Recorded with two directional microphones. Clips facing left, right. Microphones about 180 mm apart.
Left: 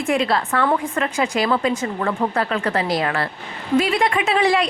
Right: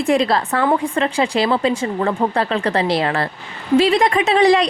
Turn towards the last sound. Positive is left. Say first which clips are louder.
# right 5 dB
turn(degrees=-35)  # may be behind; listen again after turning